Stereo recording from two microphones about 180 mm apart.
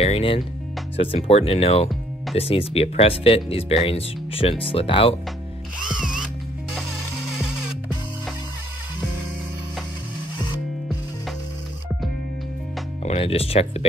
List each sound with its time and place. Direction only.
0.0 s speech: 35° left (ahead or behind)
5.9 s drill: centre (ahead or behind)
13.0 s speech: 35° left (ahead or behind)